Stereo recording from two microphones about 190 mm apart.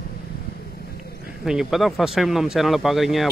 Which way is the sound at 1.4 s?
5° right (ahead or behind).